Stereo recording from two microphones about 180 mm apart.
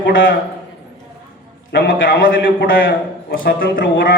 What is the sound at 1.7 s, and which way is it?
A man's voice, 85° left.